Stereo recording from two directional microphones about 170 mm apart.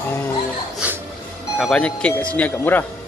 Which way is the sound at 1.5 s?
5° left (ahead or behind).